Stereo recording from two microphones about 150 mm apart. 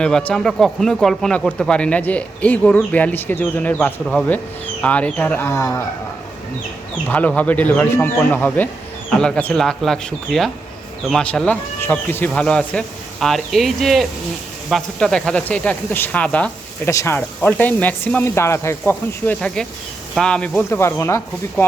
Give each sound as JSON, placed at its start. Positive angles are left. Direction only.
{"t": 0.0, "sound": "speech", "side_deg": 5}
{"t": 7.1, "sound": "speech", "side_deg": 10}
{"t": 16.9, "sound": "speech", "side_deg": 20}
{"t": 17.2, "sound": "speech", "side_deg": 10}